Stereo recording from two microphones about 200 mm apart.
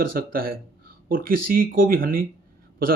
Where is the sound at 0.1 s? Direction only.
45° right (ahead or behind).